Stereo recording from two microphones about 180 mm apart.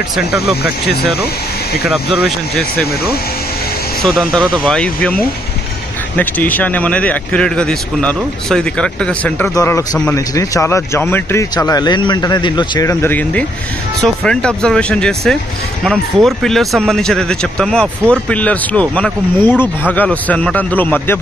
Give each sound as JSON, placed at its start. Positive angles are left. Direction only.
{"t": 1.9, "sound": "speech", "side_deg": 0}
{"t": 4.0, "sound": "speech", "side_deg": 0}